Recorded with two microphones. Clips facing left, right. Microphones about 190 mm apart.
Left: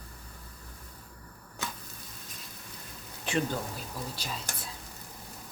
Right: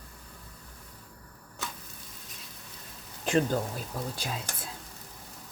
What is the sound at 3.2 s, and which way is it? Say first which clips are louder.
Speech: right 5 dB; 45° right (ahead or behind).